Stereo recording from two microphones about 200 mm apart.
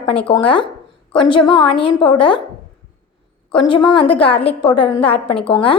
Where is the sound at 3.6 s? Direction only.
25° left (ahead or behind).